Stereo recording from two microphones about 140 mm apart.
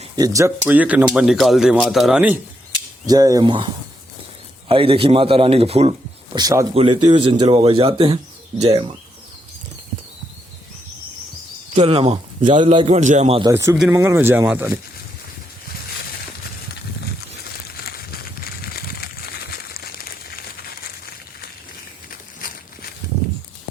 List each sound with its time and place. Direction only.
0.2 s speech: 20° right (ahead or behind)
3.1 s speech: 25° right (ahead or behind)
4.7 s speech: 40° right (ahead or behind)
6.3 s speech: 25° right (ahead or behind)
6.7 s a man's voice: 40° right (ahead or behind)
11.7 s a man's voice: 45° right (ahead or behind)
13.5 s speech: 20° right (ahead or behind)
17.7 s a sound: 90° left
22.4 s a sound: 90° left